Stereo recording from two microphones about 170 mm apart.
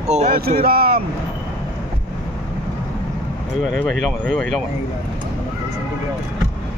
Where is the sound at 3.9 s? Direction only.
Centre (ahead or behind).